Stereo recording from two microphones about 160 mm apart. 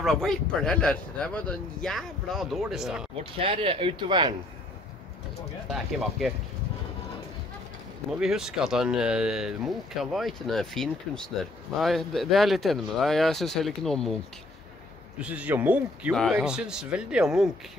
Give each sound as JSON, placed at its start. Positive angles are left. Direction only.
{"t": 0.0, "sound": "speech", "side_deg": 0}
{"t": 3.3, "sound": "speech", "side_deg": -35}
{"t": 5.7, "sound": "speech", "side_deg": 0}
{"t": 8.2, "sound": "speech", "side_deg": -5}
{"t": 15.1, "sound": "speech", "side_deg": -10}
{"t": 16.1, "sound": "speech", "side_deg": 0}